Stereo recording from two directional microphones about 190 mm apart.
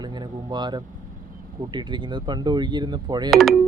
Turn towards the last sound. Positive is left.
turn(degrees=0)  # may be behind; listen again after turning